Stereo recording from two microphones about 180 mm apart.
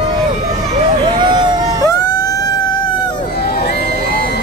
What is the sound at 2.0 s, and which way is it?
Vehicle, 20° left (ahead or behind).